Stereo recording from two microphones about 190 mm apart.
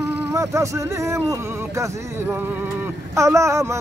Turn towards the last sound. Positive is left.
turn(degrees=-15)  # may be behind; listen again after turning